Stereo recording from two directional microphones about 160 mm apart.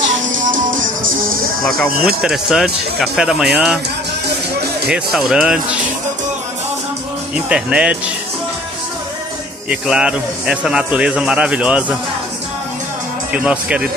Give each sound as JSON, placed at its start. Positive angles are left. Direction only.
{"t": 0.3, "sound": "music", "side_deg": -55}
{"t": 1.6, "sound": "speech", "side_deg": 0}
{"t": 4.6, "sound": "music", "side_deg": -90}
{"t": 4.9, "sound": "speech", "side_deg": -5}
{"t": 7.3, "sound": "a man's voice", "side_deg": -5}
{"t": 9.7, "sound": "a man's voice", "side_deg": -5}
{"t": 13.3, "sound": "a man's voice", "side_deg": -5}